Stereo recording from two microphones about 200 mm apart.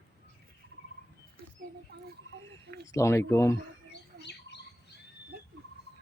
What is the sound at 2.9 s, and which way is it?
Speech, 15° left (ahead or behind).